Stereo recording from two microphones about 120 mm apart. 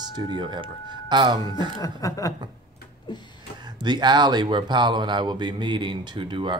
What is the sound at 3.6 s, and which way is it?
Speech, 40° right (ahead or behind).